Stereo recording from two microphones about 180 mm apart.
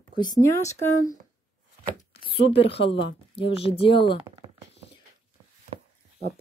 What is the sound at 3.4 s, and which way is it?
Speech, 30° left (ahead or behind).